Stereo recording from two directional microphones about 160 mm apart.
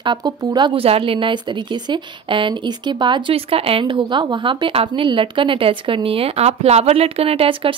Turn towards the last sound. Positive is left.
turn(degrees=-35)  # may be behind; listen again after turning